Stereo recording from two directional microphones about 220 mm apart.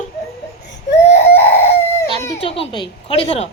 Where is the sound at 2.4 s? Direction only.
25° left (ahead or behind).